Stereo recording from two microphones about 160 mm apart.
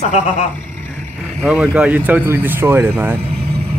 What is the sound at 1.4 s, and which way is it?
Speech, 5° right (ahead or behind).